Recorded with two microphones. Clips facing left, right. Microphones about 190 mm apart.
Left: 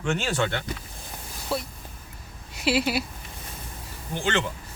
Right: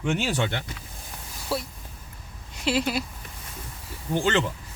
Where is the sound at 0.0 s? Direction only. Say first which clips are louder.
Even; 15° right (ahead or behind).